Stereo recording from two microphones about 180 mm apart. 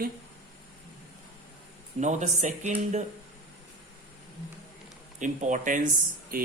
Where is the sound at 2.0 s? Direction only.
40° right (ahead or behind).